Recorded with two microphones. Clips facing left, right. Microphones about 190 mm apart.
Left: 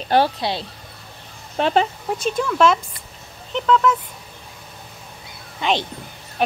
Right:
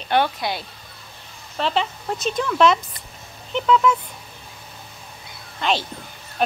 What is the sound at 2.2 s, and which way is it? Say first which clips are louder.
Speech: even; 10° left (ahead or behind).